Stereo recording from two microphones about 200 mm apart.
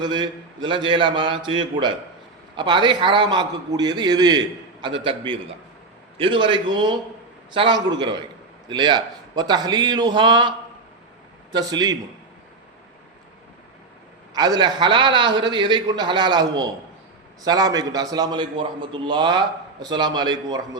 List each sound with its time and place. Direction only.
0.0 s a man's voice: 20° right (ahead or behind)
11.5 s a man's voice: 20° right (ahead or behind)
14.3 s a man's voice: 20° right (ahead or behind)